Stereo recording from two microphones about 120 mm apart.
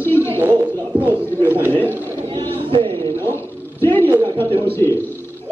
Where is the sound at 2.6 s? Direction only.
45° right (ahead or behind).